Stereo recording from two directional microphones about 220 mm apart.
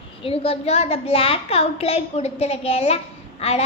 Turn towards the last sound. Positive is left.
turn(degrees=30)  # may be behind; listen again after turning